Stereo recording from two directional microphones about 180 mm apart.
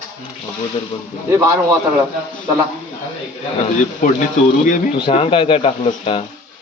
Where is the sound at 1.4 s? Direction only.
20° right (ahead or behind).